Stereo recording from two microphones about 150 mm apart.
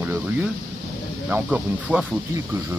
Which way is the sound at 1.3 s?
10° right (ahead or behind).